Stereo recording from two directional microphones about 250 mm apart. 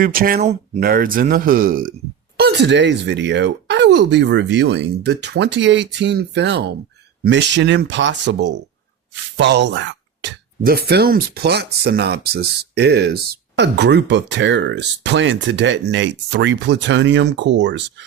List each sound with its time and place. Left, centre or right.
0.0 s speech: right